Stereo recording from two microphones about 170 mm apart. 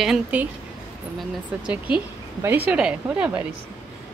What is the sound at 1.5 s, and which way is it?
A woman's voice, 5° right (ahead or behind).